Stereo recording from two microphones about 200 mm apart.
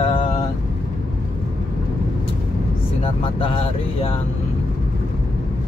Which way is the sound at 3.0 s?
25° left (ahead or behind).